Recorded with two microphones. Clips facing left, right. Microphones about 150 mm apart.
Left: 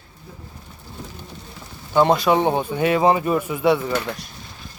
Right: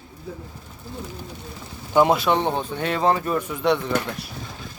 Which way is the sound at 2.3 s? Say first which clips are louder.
Left 4 dB; 15° left (ahead or behind).